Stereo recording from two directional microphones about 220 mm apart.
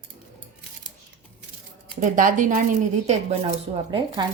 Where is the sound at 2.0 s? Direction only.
35° right (ahead or behind).